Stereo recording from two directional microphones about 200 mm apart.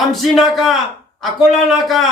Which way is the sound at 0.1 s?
Centre (ahead or behind).